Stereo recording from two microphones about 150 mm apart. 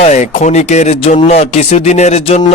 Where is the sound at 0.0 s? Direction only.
50° left (ahead or behind).